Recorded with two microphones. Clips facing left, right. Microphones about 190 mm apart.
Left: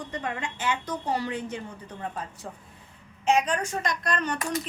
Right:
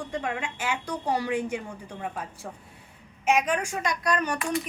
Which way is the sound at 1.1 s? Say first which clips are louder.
Right 3 dB; 15° right (ahead or behind).